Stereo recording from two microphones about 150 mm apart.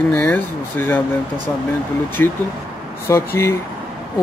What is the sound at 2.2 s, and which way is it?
Speech, 15° left (ahead or behind).